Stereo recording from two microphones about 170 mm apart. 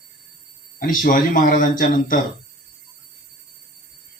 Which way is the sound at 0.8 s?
55° left (ahead or behind).